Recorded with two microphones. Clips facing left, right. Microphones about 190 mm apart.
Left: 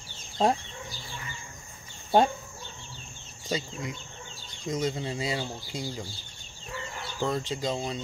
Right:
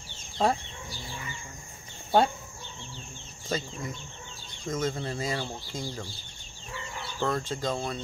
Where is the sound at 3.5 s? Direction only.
15° left (ahead or behind).